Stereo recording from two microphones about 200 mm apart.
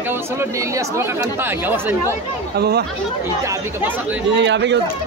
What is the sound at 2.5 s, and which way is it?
Speech, 55° right (ahead or behind).